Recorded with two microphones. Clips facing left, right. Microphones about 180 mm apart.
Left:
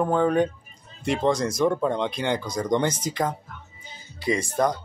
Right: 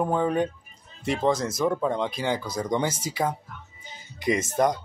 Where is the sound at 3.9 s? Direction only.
20° right (ahead or behind).